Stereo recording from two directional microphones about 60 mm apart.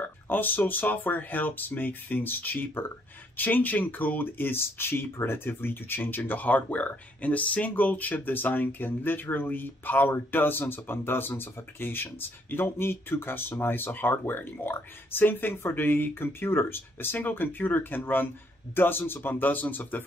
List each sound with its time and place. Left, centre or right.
0.0 s speech: left